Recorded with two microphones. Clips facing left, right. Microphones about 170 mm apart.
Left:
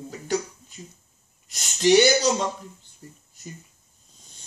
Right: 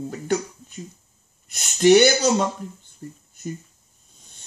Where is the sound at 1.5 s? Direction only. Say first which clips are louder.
Right 4 dB; 55° right (ahead or behind).